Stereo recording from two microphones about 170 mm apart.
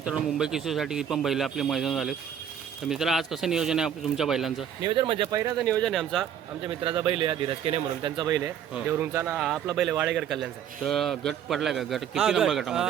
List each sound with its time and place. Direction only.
0.0 s a man's voice: 5° right (ahead or behind)
4.9 s speech: 30° right (ahead or behind)
5.5 s a man's voice: 5° left (ahead or behind)
6.7 s speech: 30° right (ahead or behind)
8.9 s a man's voice: 15° right (ahead or behind)